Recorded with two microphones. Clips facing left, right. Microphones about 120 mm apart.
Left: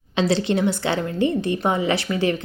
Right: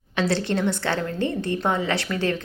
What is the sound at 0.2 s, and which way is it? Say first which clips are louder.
A woman's voice: left 3 dB; 15° left (ahead or behind).